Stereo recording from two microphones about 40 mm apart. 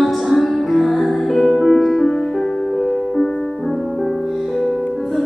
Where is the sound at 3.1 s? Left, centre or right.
Centre.